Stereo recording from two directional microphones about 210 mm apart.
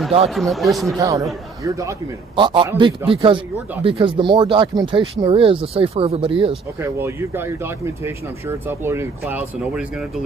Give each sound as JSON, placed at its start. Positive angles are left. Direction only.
{"t": 0.3, "sound": "speech", "side_deg": 0}
{"t": 0.9, "sound": "speech", "side_deg": -15}
{"t": 6.8, "sound": "speech", "side_deg": -10}